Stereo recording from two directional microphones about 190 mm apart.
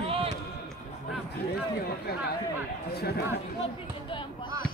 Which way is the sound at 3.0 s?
55° left (ahead or behind).